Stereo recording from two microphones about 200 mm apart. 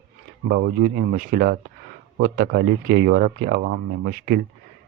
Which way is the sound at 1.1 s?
45° right (ahead or behind).